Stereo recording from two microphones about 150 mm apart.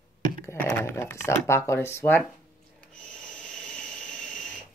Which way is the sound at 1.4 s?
15° left (ahead or behind).